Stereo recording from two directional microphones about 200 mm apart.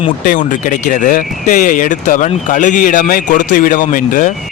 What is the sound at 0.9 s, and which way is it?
A man's voice, 40° left (ahead or behind).